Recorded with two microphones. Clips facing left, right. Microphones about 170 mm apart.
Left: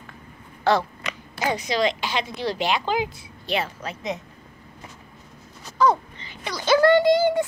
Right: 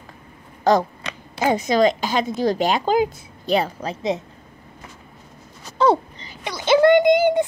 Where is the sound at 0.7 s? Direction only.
40° right (ahead or behind).